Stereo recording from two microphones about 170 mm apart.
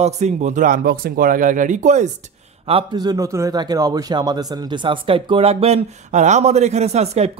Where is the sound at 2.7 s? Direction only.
30° right (ahead or behind).